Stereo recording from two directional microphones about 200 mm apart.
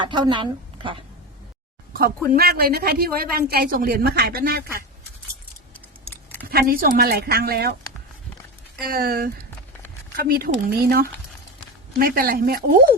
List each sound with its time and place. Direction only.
0.0 s a woman's voice: 25° right (ahead or behind)
1.9 s a sound: 45° right (ahead or behind)
2.3 s speech: 50° right (ahead or behind)
6.5 s speech: 50° right (ahead or behind)
8.8 s speech: 50° right (ahead or behind)